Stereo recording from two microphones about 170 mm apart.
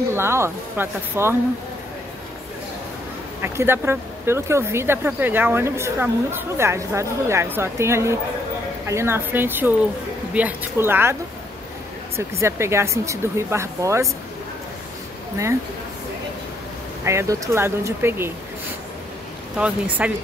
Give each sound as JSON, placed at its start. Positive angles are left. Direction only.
{"t": 0.1, "sound": "speech", "side_deg": -15}
{"t": 3.4, "sound": "speech", "side_deg": -15}
{"t": 12.2, "sound": "speech", "side_deg": -15}
{"t": 17.0, "sound": "speech", "side_deg": -15}
{"t": 19.6, "sound": "speech", "side_deg": -10}